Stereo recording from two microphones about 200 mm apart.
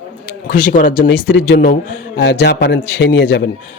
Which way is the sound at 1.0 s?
55° left (ahead or behind).